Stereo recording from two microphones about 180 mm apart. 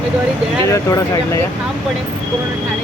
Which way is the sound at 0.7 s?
20° left (ahead or behind).